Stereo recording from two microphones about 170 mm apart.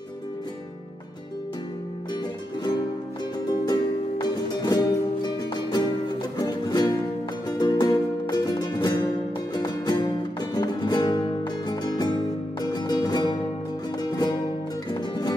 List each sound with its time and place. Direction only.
3.6 s music: 25° left (ahead or behind)